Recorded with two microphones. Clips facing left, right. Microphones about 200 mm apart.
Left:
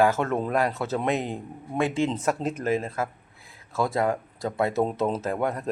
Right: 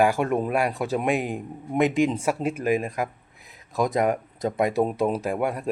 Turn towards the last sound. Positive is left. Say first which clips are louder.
# right 1 dB
turn(degrees=-10)  # may be behind; listen again after turning